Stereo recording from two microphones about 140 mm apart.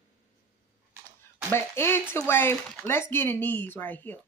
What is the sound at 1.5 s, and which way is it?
Speech, 15° left (ahead or behind).